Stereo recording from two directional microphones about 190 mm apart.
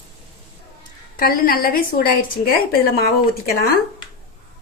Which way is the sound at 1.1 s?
50° left (ahead or behind).